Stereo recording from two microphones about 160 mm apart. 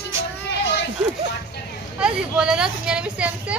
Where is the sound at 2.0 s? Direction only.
5° right (ahead or behind).